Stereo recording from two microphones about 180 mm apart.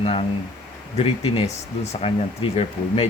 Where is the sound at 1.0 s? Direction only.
35° left (ahead or behind).